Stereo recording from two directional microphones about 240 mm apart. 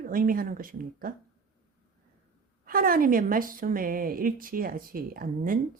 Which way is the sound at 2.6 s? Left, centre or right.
Right.